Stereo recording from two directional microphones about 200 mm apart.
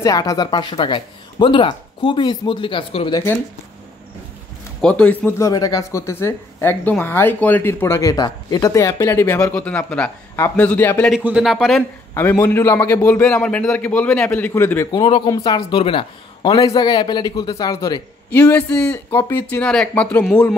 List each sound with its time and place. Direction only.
0.0 s speech: 15° left (ahead or behind)
4.8 s speech: 5° left (ahead or behind)
11.1 s speech: 5° right (ahead or behind)
12.1 s speech: 10° left (ahead or behind)
18.5 s speech: 5° left (ahead or behind)